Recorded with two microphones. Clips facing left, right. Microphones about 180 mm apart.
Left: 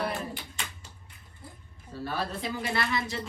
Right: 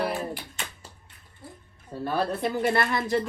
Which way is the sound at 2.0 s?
50° right (ahead or behind).